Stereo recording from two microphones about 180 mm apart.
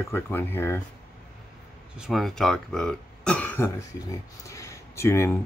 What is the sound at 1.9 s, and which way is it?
Speech, centre (ahead or behind).